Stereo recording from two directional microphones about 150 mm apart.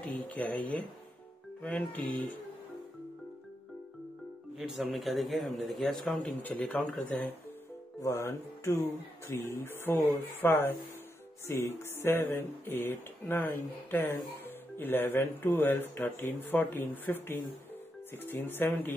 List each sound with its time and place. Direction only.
0.0 s speech: 10° left (ahead or behind)
4.6 s a man's voice: centre (ahead or behind)